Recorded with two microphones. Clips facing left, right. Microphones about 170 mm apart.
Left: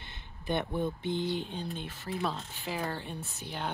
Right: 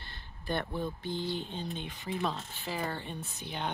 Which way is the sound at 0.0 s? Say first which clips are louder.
Left 2 dB; 20° left (ahead or behind).